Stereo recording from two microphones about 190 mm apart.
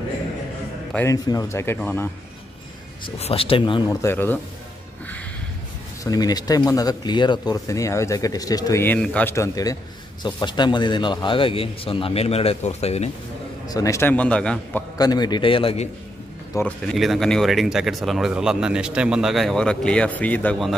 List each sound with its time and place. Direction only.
0.9 s a man's voice: 15° left (ahead or behind)
3.2 s speech: 30° left (ahead or behind)
4.0 s a man's voice: 10° left (ahead or behind)
6.0 s speech: 20° left (ahead or behind)
13.7 s a man's voice: 20° left (ahead or behind)
15.0 s speech: 20° left (ahead or behind)
16.5 s speech: 5° left (ahead or behind)